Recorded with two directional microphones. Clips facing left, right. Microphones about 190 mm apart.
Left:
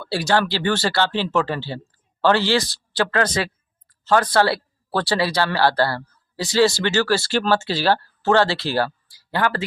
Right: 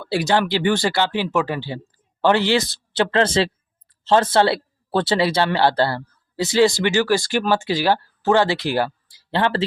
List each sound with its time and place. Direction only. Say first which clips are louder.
0.0 s speech: right 1 dB; 20° right (ahead or behind)